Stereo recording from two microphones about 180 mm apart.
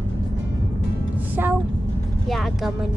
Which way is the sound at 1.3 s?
10° right (ahead or behind).